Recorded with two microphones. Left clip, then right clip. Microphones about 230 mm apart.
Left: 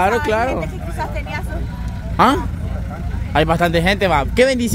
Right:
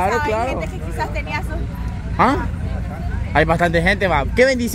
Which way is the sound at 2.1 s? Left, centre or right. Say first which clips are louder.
Left 2 dB; centre.